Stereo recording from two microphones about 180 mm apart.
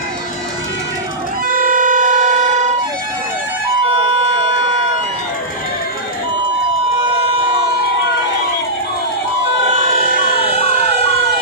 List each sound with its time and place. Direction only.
1.5 s vehicle: 50° right (ahead or behind)
10.0 s emergency vehicle: 60° right (ahead or behind)